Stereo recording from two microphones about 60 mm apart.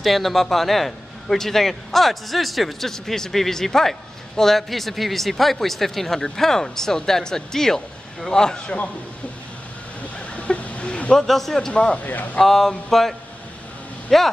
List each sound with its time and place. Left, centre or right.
0.0 s speech: centre
10.1 s a sound: centre
11.1 s speech: centre
11.7 s speech: centre
12.4 s speech: centre
14.1 s speech: centre